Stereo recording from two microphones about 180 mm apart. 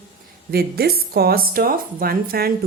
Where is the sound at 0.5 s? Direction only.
60° right (ahead or behind).